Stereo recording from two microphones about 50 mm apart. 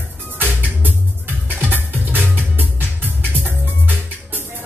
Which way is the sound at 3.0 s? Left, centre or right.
Right.